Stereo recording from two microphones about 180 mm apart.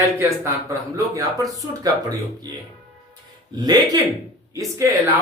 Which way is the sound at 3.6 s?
25° right (ahead or behind).